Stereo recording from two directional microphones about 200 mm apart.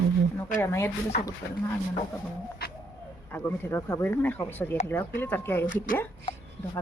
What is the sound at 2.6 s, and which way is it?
Bird, 50° left (ahead or behind).